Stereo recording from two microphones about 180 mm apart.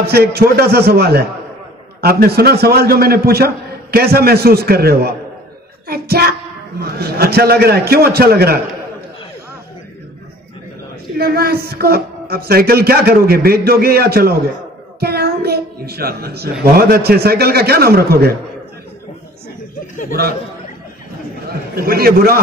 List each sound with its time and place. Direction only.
0.1 s a man's voice: 60° right (ahead or behind)
11.1 s a man's voice: 60° right (ahead or behind)
15.0 s a sound: 60° right (ahead or behind)
16.7 s a man's voice: 55° right (ahead or behind)
21.5 s a man's voice: 55° right (ahead or behind)